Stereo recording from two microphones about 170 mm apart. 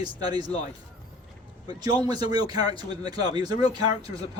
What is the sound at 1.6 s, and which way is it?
Speech, 25° right (ahead or behind).